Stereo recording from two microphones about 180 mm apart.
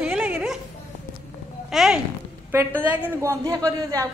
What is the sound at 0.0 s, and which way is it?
Dog, 10° right (ahead or behind).